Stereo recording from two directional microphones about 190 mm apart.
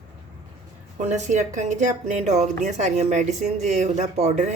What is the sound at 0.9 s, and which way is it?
Speech, 40° right (ahead or behind).